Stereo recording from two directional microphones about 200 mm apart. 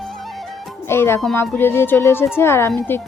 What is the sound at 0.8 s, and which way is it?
Speech, 10° left (ahead or behind).